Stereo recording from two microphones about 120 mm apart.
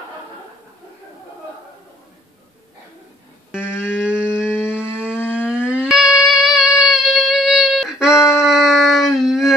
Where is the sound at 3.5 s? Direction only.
20° left (ahead or behind).